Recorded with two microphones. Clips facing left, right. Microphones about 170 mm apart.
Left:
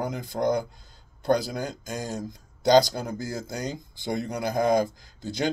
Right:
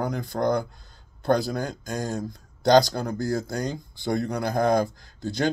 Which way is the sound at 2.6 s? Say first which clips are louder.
Right 1 dB; 15° left (ahead or behind).